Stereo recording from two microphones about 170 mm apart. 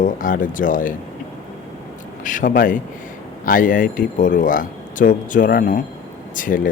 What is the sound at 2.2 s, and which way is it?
Speech, 50° left (ahead or behind).